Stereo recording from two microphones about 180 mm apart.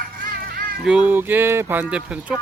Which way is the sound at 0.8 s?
5° right (ahead or behind).